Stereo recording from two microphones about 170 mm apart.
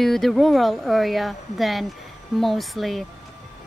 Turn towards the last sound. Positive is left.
turn(degrees=0)  # may be behind; listen again after turning